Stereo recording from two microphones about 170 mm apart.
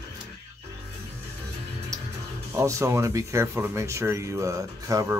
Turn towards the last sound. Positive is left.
turn(degrees=-20)  # may be behind; listen again after turning